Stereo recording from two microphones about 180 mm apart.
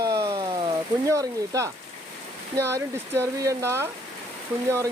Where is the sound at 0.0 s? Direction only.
20° right (ahead or behind).